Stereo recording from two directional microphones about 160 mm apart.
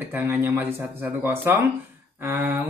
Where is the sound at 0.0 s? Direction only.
10° right (ahead or behind).